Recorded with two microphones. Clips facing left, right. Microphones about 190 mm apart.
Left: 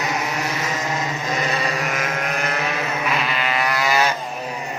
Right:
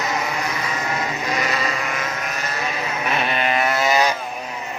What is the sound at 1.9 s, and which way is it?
Vehicle, 55° left (ahead or behind).